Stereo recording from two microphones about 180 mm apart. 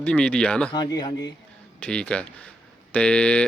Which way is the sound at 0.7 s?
20° left (ahead or behind).